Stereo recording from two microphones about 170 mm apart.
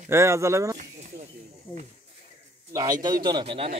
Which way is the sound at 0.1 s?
15° right (ahead or behind).